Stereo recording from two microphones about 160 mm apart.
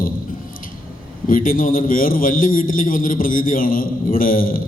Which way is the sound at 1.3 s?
60° left (ahead or behind).